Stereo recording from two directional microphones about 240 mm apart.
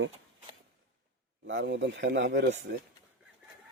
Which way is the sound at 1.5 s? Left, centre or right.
Right.